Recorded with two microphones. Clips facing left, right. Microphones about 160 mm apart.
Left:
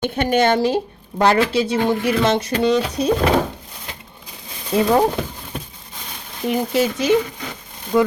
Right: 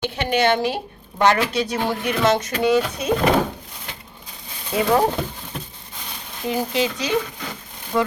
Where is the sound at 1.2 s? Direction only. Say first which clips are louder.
Left 2 dB; 30° left (ahead or behind).